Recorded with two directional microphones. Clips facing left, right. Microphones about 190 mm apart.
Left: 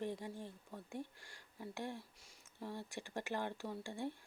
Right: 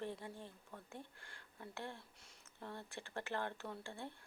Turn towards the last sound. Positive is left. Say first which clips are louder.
# left 5 dB
turn(degrees=15)  # may be behind; listen again after turning